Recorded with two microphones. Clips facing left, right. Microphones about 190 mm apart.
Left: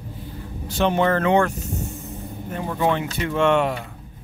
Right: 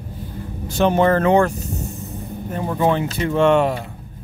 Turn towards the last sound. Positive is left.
turn(degrees=-35)  # may be behind; listen again after turning